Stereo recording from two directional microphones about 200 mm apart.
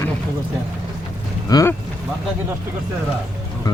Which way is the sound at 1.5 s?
15° left (ahead or behind).